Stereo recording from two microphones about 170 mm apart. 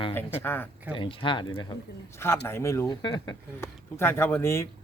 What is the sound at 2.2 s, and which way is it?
Speech, 15° left (ahead or behind).